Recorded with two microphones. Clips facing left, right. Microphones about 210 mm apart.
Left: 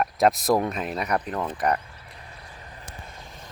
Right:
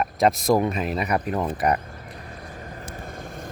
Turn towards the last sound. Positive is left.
turn(degrees=-50)  # may be behind; listen again after turning